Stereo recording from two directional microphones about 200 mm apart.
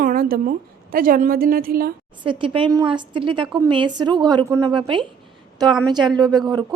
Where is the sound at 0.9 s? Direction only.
45° right (ahead or behind).